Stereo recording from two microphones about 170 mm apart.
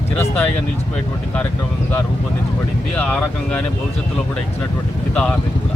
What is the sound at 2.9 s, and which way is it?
Speech, 5° left (ahead or behind).